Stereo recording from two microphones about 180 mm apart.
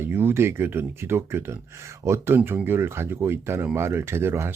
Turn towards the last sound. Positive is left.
turn(degrees=-15)  # may be behind; listen again after turning